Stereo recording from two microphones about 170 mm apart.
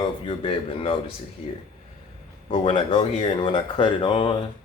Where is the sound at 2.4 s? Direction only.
30° left (ahead or behind).